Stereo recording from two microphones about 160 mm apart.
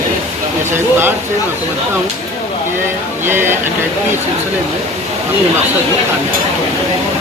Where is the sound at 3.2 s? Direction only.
15° right (ahead or behind).